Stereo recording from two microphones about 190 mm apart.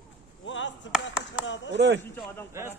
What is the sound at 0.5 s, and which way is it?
Chop, 80° left.